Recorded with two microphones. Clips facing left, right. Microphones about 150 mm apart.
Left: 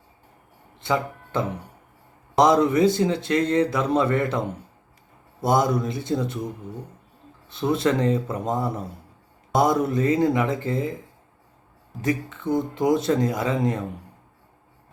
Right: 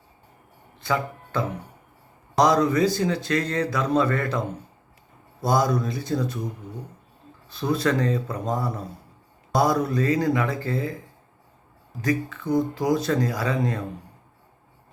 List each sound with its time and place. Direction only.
0.8 s speech: 20° left (ahead or behind)
7.5 s speech: 25° left (ahead or behind)
12.0 s speech: 25° left (ahead or behind)